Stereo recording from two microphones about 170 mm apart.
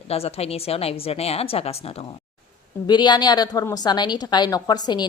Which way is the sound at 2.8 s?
25° left (ahead or behind).